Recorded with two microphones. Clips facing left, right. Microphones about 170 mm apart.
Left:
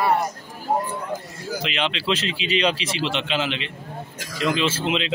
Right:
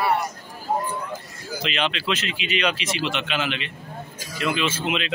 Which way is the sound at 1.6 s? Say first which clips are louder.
Right 1 dB; 20° left (ahead or behind).